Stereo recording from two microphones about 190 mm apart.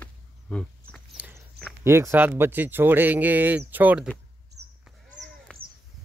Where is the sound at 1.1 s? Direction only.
5° right (ahead or behind).